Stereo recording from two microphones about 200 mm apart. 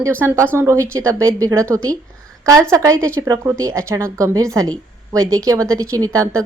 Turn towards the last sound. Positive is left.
turn(degrees=-15)  # may be behind; listen again after turning